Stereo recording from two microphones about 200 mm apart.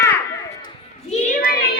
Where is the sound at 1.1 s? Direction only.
40° left (ahead or behind).